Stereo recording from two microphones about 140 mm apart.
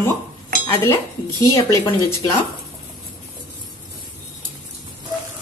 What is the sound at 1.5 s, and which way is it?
Speech, 20° left (ahead or behind).